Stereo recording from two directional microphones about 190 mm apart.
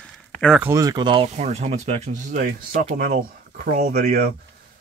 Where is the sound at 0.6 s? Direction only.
15° right (ahead or behind).